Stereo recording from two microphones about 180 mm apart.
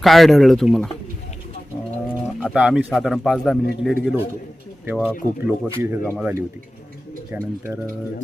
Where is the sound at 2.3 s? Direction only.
5° right (ahead or behind).